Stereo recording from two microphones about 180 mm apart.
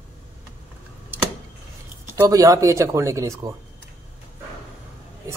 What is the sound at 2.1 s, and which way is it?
A man's voice, 15° right (ahead or behind).